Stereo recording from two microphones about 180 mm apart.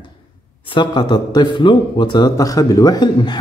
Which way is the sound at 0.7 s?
25° left (ahead or behind).